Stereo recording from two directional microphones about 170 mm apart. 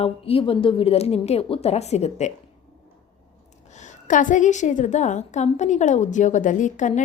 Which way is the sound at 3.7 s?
45° left (ahead or behind).